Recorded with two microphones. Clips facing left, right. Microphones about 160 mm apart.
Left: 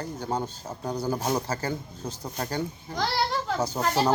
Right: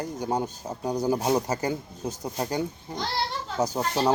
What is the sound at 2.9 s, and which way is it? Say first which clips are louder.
Children playing: left 5 dB; 75° left (ahead or behind).